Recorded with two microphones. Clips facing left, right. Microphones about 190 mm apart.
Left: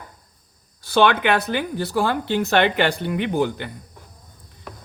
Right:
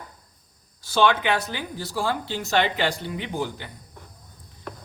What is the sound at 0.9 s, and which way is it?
A man's voice, 60° left (ahead or behind).